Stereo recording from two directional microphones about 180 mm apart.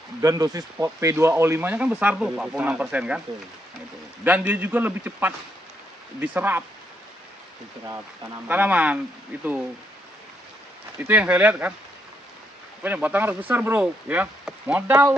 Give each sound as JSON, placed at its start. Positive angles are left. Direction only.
{"t": 0.2, "sound": "speech", "side_deg": -20}
{"t": 4.2, "sound": "speech", "side_deg": -10}
{"t": 8.5, "sound": "speech", "side_deg": -10}
{"t": 11.0, "sound": "speech", "side_deg": -10}
{"t": 12.8, "sound": "speech", "side_deg": -10}